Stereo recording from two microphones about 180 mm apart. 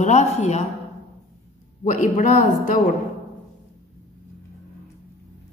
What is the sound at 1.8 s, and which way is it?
A woman's voice, 45° left (ahead or behind).